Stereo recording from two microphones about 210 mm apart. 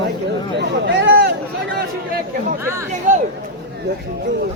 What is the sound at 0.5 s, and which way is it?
Speech, 55° right (ahead or behind).